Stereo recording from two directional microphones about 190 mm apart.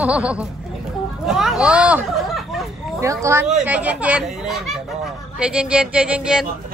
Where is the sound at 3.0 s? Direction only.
15° right (ahead or behind).